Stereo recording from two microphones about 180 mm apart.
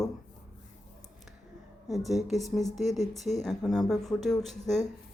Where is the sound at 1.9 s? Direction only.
Centre (ahead or behind).